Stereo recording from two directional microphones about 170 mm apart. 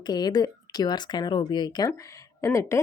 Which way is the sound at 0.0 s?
25° left (ahead or behind).